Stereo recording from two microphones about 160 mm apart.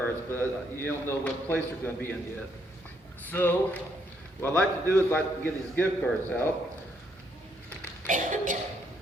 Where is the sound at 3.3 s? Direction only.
10° left (ahead or behind).